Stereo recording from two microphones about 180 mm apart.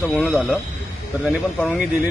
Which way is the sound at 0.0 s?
Centre (ahead or behind).